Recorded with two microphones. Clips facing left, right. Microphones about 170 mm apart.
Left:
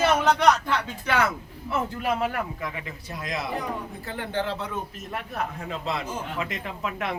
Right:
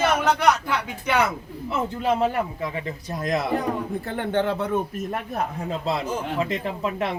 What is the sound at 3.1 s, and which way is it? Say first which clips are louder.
Speech: right 7 dB; 45° right (ahead or behind).